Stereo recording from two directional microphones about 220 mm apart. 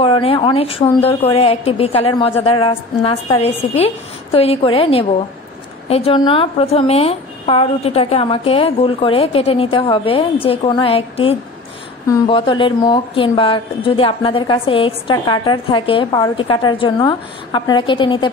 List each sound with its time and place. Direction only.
0.0 s a woman's voice: 25° left (ahead or behind)